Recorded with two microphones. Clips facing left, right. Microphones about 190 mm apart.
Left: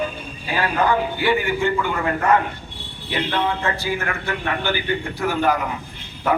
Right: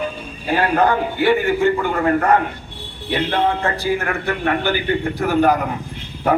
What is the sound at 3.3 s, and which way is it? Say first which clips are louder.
A man's voice: right 3 dB; 50° right (ahead or behind).